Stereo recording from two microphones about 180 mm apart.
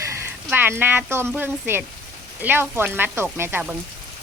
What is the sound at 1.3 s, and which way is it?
Speech, 10° right (ahead or behind).